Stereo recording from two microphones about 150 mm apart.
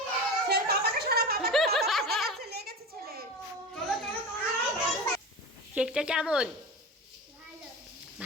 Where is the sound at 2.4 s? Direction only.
90° right.